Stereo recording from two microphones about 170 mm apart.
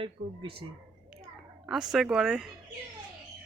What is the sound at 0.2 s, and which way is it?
Speech, 50° right (ahead or behind).